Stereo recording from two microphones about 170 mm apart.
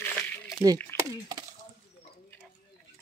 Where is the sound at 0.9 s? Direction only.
15° left (ahead or behind).